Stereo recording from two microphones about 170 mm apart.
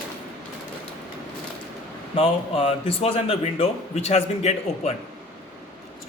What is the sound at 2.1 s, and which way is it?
A man's voice, 35° left (ahead or behind).